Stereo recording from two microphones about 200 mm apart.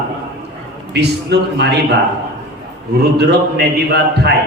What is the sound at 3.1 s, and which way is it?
A man's voice, 55° right (ahead or behind).